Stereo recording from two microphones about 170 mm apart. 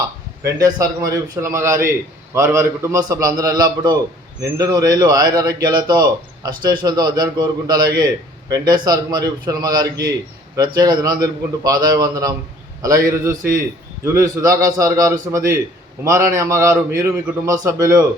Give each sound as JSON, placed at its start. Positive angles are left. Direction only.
{"t": 0.4, "sound": "a man's voice", "side_deg": -20}